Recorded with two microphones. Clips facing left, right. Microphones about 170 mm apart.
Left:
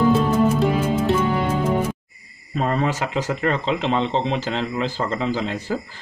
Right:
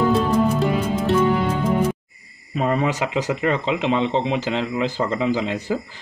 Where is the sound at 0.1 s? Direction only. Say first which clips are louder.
Left 1 dB; centre (ahead or behind).